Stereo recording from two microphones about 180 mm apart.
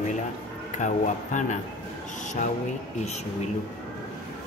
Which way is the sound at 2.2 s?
40° left (ahead or behind).